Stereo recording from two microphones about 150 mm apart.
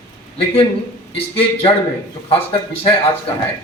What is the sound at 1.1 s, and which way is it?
Speech, 40° left (ahead or behind).